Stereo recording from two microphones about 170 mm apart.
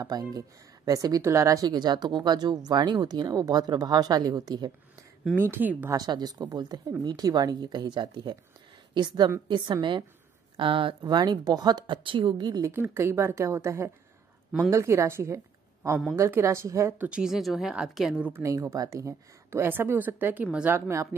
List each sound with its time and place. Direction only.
0.0 s speech: 20° right (ahead or behind)
5.2 s a woman's voice: 10° right (ahead or behind)
5.9 s a woman's voice: 25° right (ahead or behind)